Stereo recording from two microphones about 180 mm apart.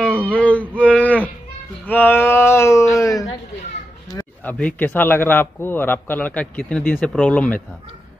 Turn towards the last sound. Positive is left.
turn(degrees=5)  # may be behind; listen again after turning